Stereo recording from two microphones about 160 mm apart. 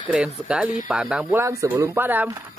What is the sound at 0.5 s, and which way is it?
Speech, 5° right (ahead or behind).